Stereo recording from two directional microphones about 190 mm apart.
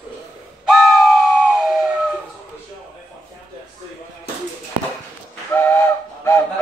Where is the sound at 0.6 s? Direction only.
Centre (ahead or behind).